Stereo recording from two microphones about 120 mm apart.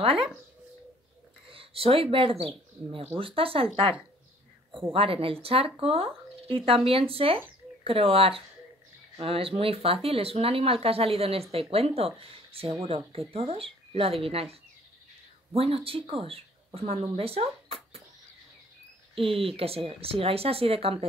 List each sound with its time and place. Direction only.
0.0 s speech: 50° right (ahead or behind)
1.5 s speech: 55° right (ahead or behind)
4.9 s speech: 50° right (ahead or behind)
19.1 s speech: 50° right (ahead or behind)